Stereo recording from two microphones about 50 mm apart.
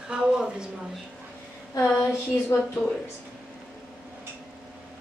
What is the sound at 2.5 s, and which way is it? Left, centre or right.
Speech, left.